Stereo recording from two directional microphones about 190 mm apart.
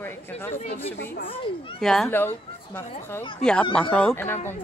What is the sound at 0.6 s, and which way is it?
Speech, 35° left (ahead or behind).